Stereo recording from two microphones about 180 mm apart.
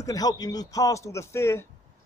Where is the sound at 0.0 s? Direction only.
20° left (ahead or behind).